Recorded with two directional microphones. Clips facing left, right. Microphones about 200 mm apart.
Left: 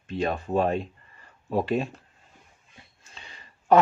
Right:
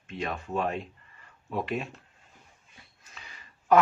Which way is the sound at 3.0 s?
30° left (ahead or behind).